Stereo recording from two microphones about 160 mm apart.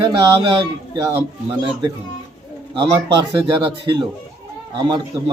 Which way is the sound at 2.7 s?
20° right (ahead or behind).